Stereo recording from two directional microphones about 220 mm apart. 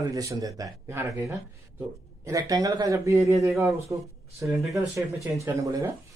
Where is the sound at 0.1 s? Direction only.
15° right (ahead or behind).